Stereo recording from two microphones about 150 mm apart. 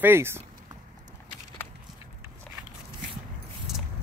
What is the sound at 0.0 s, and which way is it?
Speech, 15° right (ahead or behind).